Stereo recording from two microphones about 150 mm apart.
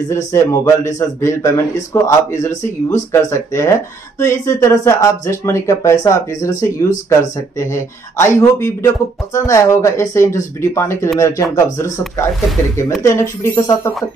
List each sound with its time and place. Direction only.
0.1 s speech: 20° left (ahead or behind)
13.0 s speech: 20° left (ahead or behind)